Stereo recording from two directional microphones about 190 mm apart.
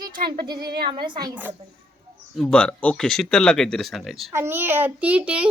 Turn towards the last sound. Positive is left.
turn(degrees=-5)  # may be behind; listen again after turning